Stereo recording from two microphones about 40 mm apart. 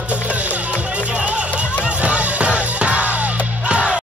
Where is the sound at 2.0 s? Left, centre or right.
Right.